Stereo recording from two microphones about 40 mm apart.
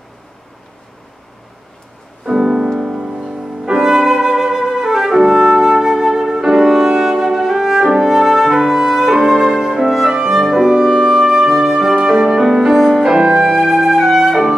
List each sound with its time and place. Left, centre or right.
2.2 s music: centre